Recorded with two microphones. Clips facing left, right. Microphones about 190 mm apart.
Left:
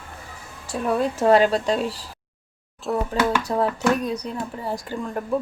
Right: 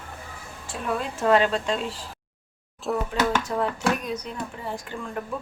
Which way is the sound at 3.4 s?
35° left (ahead or behind).